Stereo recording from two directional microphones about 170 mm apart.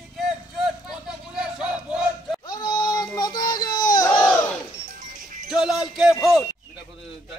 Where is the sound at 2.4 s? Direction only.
25° left (ahead or behind).